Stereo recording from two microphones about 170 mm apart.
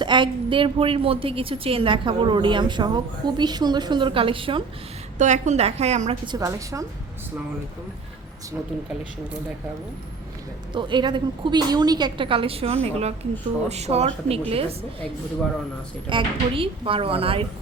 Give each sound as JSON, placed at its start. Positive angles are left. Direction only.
{"t": 0.0, "sound": "a woman's voice", "side_deg": -30}
{"t": 5.1, "sound": "a woman's voice", "side_deg": -45}
{"t": 6.2, "sound": "a woman's voice", "side_deg": -20}
{"t": 10.8, "sound": "a woman's voice", "side_deg": -30}
{"t": 16.0, "sound": "a woman's voice", "side_deg": -30}